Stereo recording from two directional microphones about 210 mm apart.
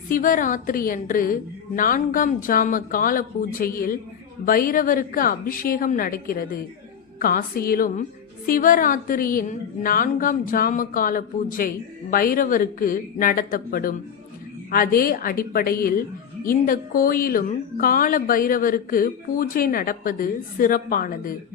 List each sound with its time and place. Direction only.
0.1 s a woman's voice: 40° left (ahead or behind)